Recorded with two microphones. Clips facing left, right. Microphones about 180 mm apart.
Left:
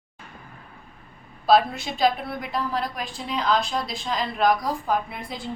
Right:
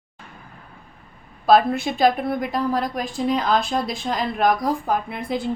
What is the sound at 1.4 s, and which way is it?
A woman's voice, 50° right (ahead or behind).